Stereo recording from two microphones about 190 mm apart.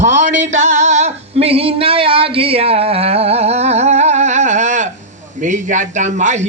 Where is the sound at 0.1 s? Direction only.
70° right (ahead or behind).